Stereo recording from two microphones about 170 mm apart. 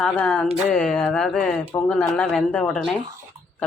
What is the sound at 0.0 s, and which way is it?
Speech, 5° left (ahead or behind).